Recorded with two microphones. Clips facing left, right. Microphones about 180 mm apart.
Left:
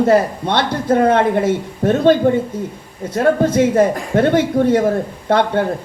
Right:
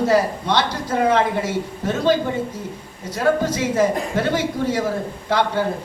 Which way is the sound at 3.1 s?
55° left (ahead or behind).